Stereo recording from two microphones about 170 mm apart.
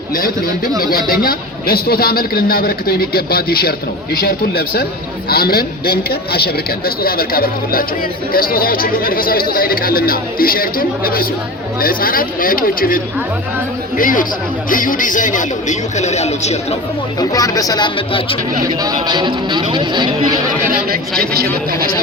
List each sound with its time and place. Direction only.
0.1 s a man's voice: 55° left (ahead or behind); by 16.7 s 40° left (ahead or behind)
17.2 s speech: 20° left (ahead or behind)
18.6 s speech: 20° right (ahead or behind)
20.6 s speech: 55° right (ahead or behind)